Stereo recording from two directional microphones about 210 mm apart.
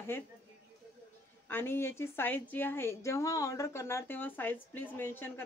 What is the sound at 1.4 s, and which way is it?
A woman's voice, 10° left (ahead or behind).